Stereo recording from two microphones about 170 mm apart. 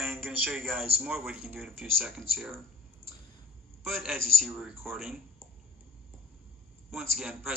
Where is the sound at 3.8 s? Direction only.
Centre (ahead or behind).